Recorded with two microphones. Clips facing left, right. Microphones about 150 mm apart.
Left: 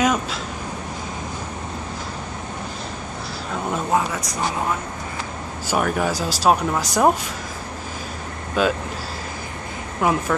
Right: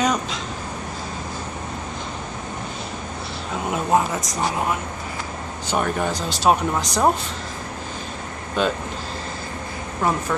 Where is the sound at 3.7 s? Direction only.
15° right (ahead or behind).